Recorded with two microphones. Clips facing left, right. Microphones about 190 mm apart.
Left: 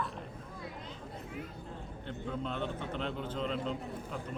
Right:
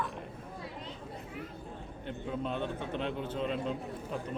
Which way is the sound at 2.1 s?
15° right (ahead or behind).